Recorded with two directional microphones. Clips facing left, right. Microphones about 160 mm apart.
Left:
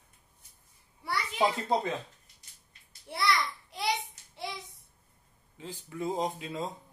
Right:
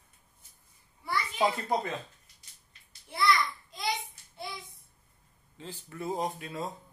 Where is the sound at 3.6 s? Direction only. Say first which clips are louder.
Left 2 dB; 75° left (ahead or behind).